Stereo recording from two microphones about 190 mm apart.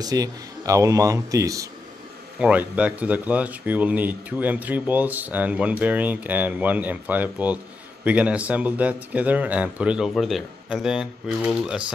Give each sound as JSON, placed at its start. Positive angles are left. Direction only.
{"t": 0.0, "sound": "speech", "side_deg": -20}
{"t": 2.3, "sound": "speech", "side_deg": -5}